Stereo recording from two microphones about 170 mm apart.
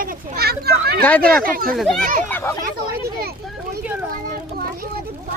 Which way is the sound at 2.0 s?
50° right (ahead or behind).